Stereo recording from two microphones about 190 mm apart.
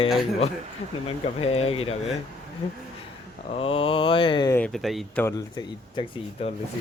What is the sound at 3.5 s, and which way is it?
Speech, 30° left (ahead or behind).